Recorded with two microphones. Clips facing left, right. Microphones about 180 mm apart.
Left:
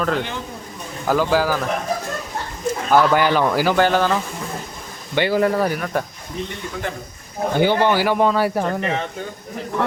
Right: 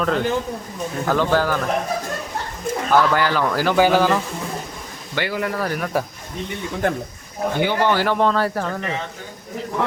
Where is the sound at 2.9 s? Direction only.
20° left (ahead or behind).